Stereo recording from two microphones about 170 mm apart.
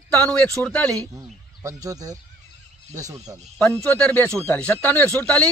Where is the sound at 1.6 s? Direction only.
20° right (ahead or behind).